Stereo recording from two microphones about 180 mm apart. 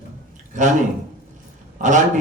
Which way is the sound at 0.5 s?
45° right (ahead or behind).